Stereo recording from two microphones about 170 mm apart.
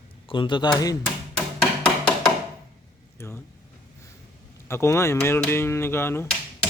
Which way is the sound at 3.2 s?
15° left (ahead or behind).